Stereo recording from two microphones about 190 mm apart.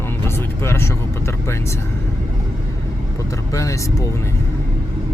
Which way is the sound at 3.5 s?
15° left (ahead or behind).